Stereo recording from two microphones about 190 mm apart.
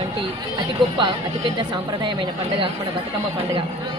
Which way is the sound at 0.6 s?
25° right (ahead or behind).